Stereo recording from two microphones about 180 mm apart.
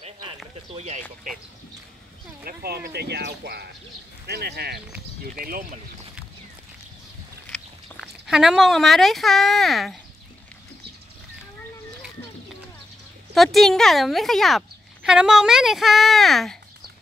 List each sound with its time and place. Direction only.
0.7 s speech: 40° right (ahead or behind)
2.4 s speech: 60° right (ahead or behind)
5.4 s speech: 50° right (ahead or behind)
8.0 s speech: 5° right (ahead or behind)
13.3 s speech: centre (ahead or behind)